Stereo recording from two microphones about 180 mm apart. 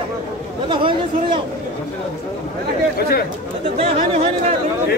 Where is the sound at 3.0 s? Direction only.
60° left (ahead or behind).